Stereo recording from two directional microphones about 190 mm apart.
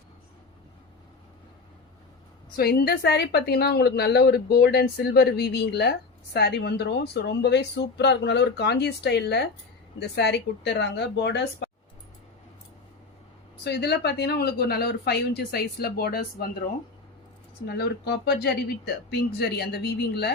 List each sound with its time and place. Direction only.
2.6 s a woman's voice: 55° left (ahead or behind)
13.7 s a woman's voice: 60° left (ahead or behind)
17.7 s a woman's voice: 60° left (ahead or behind)